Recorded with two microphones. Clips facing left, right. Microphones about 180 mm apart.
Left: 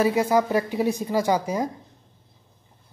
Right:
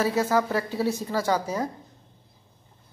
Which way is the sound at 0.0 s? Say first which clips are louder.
Left 3 dB; 15° left (ahead or behind).